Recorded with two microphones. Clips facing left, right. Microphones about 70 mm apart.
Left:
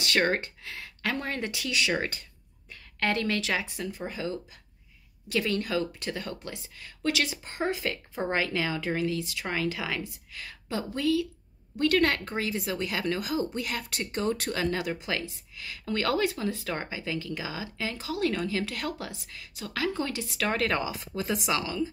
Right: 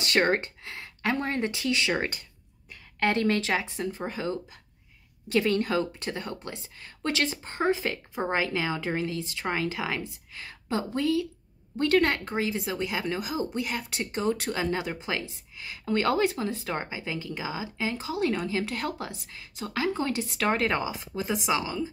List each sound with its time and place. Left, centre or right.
0.0 s speech: right